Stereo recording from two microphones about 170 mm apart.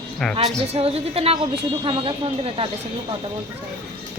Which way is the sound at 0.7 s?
35° right (ahead or behind).